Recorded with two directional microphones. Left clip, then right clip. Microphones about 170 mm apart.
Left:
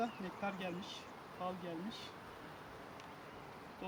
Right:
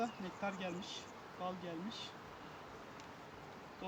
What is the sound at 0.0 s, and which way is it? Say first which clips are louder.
Speech: even; 5° right (ahead or behind).